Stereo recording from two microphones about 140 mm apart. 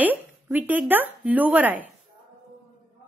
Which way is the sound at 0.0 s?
10° right (ahead or behind).